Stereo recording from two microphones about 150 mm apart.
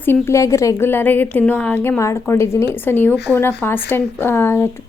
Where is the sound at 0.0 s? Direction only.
15° left (ahead or behind).